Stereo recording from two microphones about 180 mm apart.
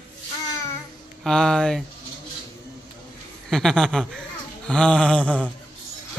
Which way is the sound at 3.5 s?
Centre (ahead or behind).